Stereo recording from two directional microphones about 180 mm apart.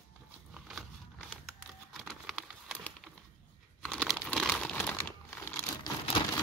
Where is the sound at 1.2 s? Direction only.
Centre (ahead or behind).